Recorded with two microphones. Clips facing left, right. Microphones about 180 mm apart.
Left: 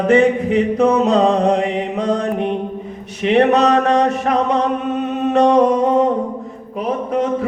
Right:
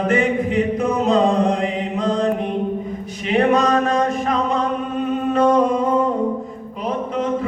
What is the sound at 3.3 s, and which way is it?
Mantra, 75° left (ahead or behind).